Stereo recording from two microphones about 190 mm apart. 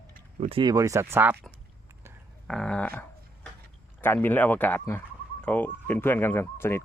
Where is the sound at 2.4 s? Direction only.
5° left (ahead or behind).